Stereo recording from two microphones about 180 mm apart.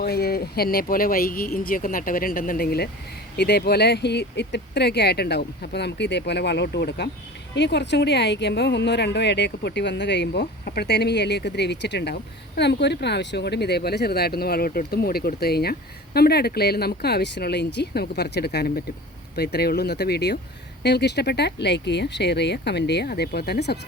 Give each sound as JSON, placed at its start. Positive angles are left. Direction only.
{"t": 0.0, "sound": "speech", "side_deg": 60}